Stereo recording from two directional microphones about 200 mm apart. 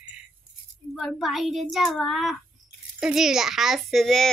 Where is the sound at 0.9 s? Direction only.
Centre (ahead or behind).